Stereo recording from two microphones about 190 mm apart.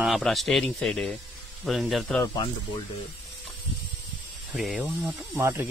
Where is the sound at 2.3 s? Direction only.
25° left (ahead or behind).